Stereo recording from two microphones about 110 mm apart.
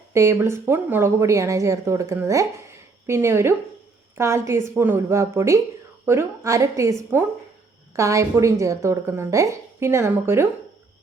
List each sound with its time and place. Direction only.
0.1 s a woman's voice: 25° right (ahead or behind)